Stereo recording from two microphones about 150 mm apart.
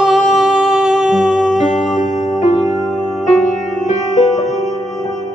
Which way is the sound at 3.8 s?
50° left (ahead or behind).